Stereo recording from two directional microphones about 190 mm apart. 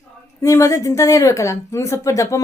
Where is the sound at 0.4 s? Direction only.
15° left (ahead or behind).